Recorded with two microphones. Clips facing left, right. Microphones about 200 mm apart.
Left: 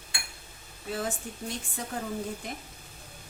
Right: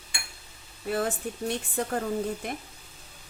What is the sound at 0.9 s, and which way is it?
A woman's voice, 60° right (ahead or behind).